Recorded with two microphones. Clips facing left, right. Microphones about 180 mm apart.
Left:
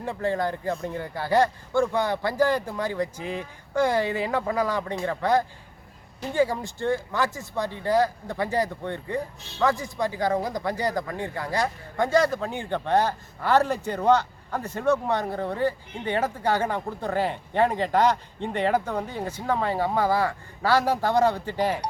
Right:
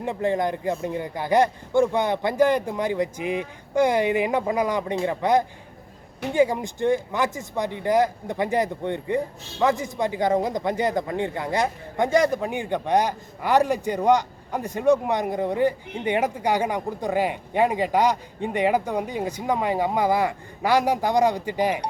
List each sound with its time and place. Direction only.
0.0 s speech: 20° right (ahead or behind)